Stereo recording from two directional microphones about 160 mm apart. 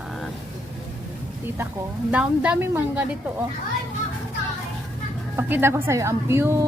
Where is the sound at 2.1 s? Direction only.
10° right (ahead or behind).